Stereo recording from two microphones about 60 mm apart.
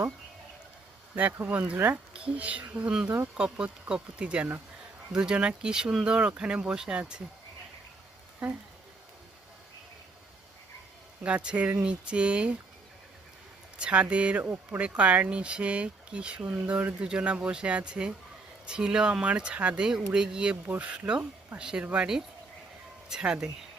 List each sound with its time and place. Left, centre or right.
1.1 s speech: right; by 7.0 s centre
8.4 s speech: centre
11.2 s speech: right
13.7 s speech: right